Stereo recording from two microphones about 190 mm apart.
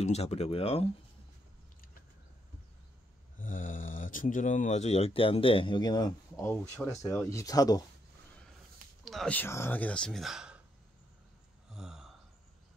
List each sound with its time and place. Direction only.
0.0 s speech: 35° left (ahead or behind)
3.3 s speech: 45° left (ahead or behind); by 7.8 s 20° left (ahead or behind)
9.0 s speech: centre (ahead or behind)
11.7 s gasp: 5° right (ahead or behind)